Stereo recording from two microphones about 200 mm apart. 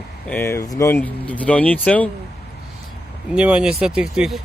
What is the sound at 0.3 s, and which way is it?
Speech, 10° left (ahead or behind).